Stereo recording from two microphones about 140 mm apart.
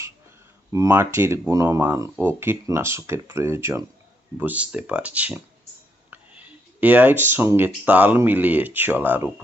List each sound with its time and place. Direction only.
0.7 s speech: 20° right (ahead or behind)